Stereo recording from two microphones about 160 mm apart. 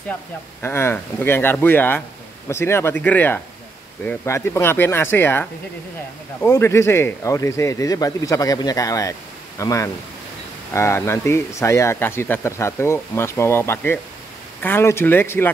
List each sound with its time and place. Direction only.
0.6 s speech: 15° left (ahead or behind)